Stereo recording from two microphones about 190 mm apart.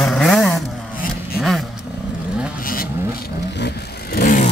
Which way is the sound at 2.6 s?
50° left (ahead or behind).